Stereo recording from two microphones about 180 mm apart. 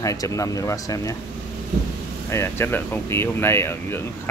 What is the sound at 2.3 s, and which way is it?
Speech, 15° left (ahead or behind).